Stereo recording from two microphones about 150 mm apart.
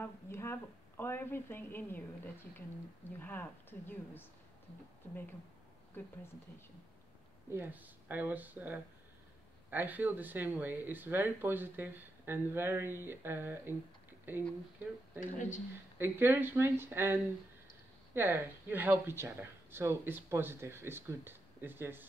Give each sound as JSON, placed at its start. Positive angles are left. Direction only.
{"t": 0.0, "sound": "a woman's voice", "side_deg": 15}
{"t": 3.2, "sound": "a woman's voice", "side_deg": 10}
{"t": 7.5, "sound": "speech", "side_deg": -15}
{"t": 15.1, "sound": "speech", "side_deg": 55}
{"t": 16.0, "sound": "speech", "side_deg": -15}